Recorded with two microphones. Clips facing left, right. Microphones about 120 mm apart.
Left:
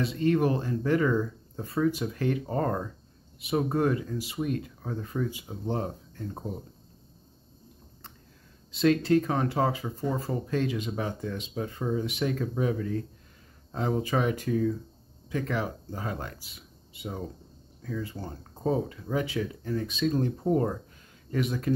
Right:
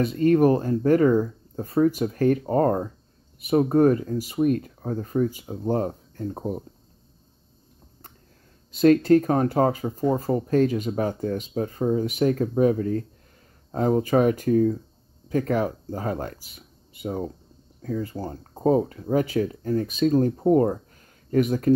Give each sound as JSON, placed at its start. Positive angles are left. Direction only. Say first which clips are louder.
{"t": 0.0, "sound": "speech", "louder": "right 7 dB", "side_deg": -45}
{"t": 8.7, "sound": "speech", "louder": "right 6 dB", "side_deg": -45}